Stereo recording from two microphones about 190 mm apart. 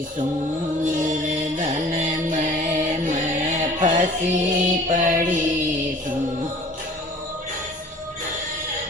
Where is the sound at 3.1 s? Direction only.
40° right (ahead or behind).